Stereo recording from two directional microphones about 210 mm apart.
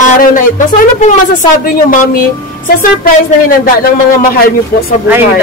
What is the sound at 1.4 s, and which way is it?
Speech, 40° left (ahead or behind).